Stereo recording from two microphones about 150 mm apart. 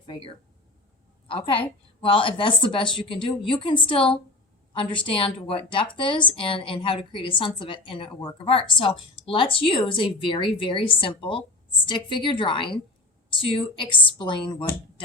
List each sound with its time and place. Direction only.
0.1 s a woman's voice: 35° left (ahead or behind)